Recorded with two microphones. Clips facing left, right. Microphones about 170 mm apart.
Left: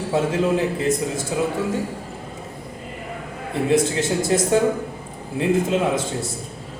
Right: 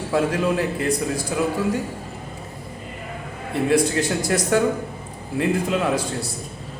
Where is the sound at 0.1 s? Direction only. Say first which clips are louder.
Left 1 dB; 20° left (ahead or behind).